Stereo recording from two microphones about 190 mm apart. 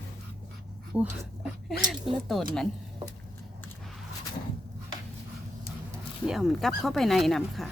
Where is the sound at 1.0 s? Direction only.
5° right (ahead or behind).